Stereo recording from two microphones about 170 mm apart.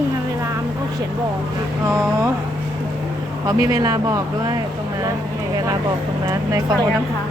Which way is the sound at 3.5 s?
20° right (ahead or behind).